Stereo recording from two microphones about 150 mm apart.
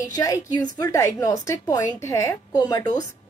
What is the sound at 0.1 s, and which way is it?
Speech, 25° left (ahead or behind).